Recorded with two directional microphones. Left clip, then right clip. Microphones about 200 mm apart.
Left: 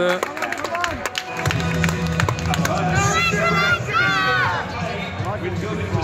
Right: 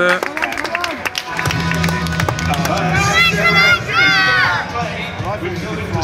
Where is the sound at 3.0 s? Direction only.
30° left (ahead or behind).